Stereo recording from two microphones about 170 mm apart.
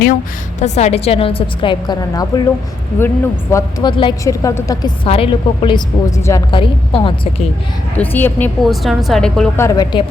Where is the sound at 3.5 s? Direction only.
25° left (ahead or behind).